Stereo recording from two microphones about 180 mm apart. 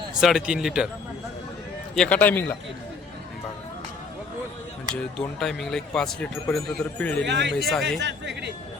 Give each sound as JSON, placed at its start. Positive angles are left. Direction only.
{"t": 0.2, "sound": "speech", "side_deg": -5}
{"t": 2.0, "sound": "a man's voice", "side_deg": 10}
{"t": 5.1, "sound": "speech", "side_deg": 0}
{"t": 7.3, "sound": "speech", "side_deg": -75}
{"t": 7.6, "sound": "speech", "side_deg": 0}
{"t": 7.9, "sound": "speech", "side_deg": -75}